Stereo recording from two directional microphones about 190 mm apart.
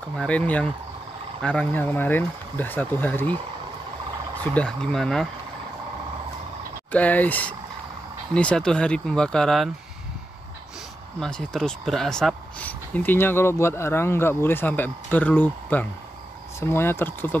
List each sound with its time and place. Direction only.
0.1 s speech: 5° left (ahead or behind)
4.4 s speech: 5° left (ahead or behind)
6.9 s speech: 10° left (ahead or behind)
11.1 s speech: 5° left (ahead or behind)